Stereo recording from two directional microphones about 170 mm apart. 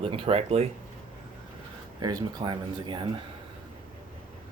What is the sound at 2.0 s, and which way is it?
Speech, 25° right (ahead or behind).